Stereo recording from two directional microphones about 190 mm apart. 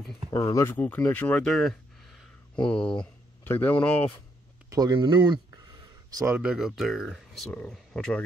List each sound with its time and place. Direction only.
0.3 s speech: 20° left (ahead or behind)
4.6 s a sound: 20° right (ahead or behind)
6.3 s speech: 5° right (ahead or behind)